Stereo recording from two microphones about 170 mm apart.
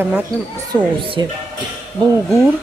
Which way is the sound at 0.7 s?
25° right (ahead or behind).